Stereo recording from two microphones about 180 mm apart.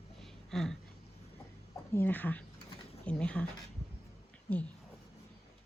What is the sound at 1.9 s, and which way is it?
Speech, 10° left (ahead or behind).